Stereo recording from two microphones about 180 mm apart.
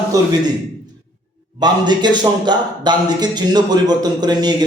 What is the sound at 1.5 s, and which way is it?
A man's voice, 25° right (ahead or behind).